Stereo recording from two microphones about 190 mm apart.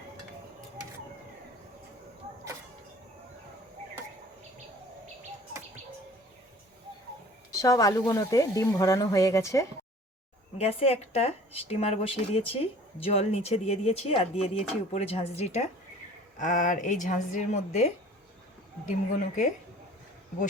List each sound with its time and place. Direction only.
7.5 s speech: 15° left (ahead or behind)
10.6 s speech: 30° left (ahead or behind)